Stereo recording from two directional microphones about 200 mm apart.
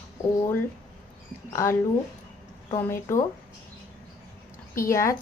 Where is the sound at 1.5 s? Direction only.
15° left (ahead or behind).